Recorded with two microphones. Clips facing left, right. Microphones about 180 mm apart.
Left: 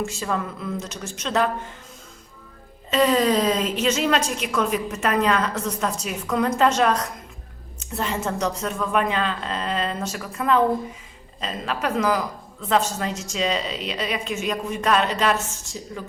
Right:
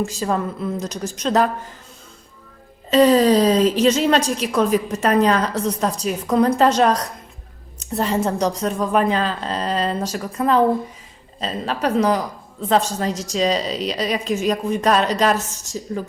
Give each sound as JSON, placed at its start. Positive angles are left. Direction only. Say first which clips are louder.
{"t": 0.0, "sound": "a woman's voice", "louder": "right 4 dB", "side_deg": -35}
{"t": 2.9, "sound": "a woman's voice", "louder": "right 6 dB", "side_deg": -35}